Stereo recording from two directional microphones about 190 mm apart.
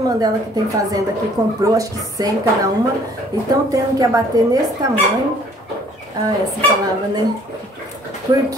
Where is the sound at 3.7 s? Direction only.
20° right (ahead or behind).